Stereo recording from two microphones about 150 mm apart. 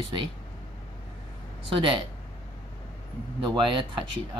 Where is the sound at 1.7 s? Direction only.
35° right (ahead or behind).